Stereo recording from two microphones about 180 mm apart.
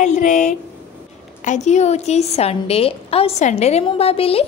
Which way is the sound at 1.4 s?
40° left (ahead or behind).